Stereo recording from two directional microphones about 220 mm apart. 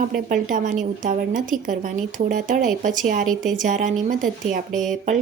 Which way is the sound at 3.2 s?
Centre (ahead or behind).